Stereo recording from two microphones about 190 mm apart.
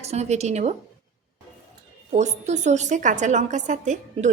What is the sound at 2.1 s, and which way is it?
A woman's voice, 35° right (ahead or behind).